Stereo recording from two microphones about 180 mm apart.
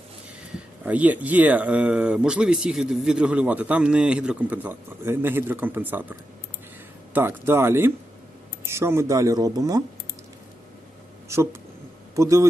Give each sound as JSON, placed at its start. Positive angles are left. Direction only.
{"t": 0.9, "sound": "speech", "side_deg": -10}
{"t": 7.1, "sound": "speech", "side_deg": -10}
{"t": 12.1, "sound": "speech", "side_deg": -15}